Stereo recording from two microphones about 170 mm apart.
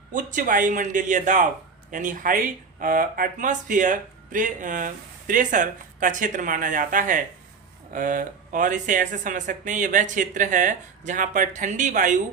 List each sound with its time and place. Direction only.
0.1 s speech: 50° right (ahead or behind)